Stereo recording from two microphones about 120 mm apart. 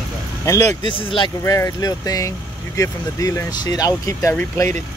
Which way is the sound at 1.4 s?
25° left (ahead or behind).